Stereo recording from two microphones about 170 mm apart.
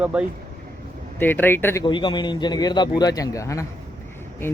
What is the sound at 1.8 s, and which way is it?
A man's voice, 25° left (ahead or behind).